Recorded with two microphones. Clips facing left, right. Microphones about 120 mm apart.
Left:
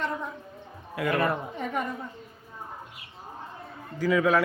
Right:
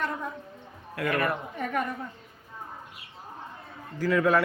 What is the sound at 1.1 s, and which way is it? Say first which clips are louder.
Speech: left 2 dB; 25° left (ahead or behind).